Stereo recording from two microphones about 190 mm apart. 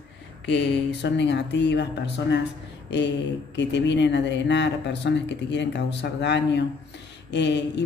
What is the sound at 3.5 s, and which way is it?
A woman's voice, 65° left (ahead or behind).